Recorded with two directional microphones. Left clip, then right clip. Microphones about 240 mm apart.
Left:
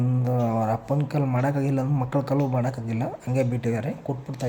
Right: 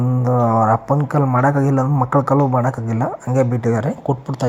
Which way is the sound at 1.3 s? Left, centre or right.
Centre.